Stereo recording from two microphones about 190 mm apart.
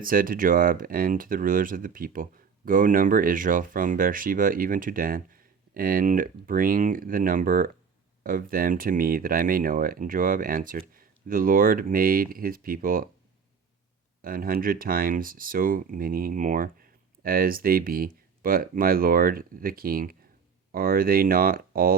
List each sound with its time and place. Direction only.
0.0 s speech: 45° right (ahead or behind)
14.2 s speech: 50° right (ahead or behind)